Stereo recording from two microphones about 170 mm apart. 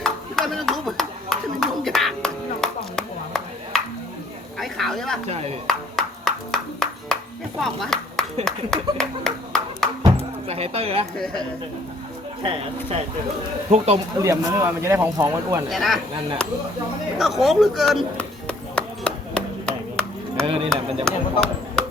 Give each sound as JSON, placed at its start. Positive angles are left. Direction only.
{"t": 0.0, "sound": "a sound", "side_deg": 0}
{"t": 5.3, "sound": "speech", "side_deg": -40}
{"t": 5.6, "sound": "music", "side_deg": 0}
{"t": 7.6, "sound": "a sound", "side_deg": 0}
{"t": 9.0, "sound": "clapping", "side_deg": 5}
{"t": 10.0, "sound": "a sound", "side_deg": -30}
{"t": 11.2, "sound": "speech", "side_deg": 5}
{"t": 12.4, "sound": "speech", "side_deg": -30}
{"t": 14.2, "sound": "speech", "side_deg": -15}
{"t": 15.7, "sound": "speech", "side_deg": 0}
{"t": 17.2, "sound": "music", "side_deg": 0}
{"t": 20.5, "sound": "speech", "side_deg": -35}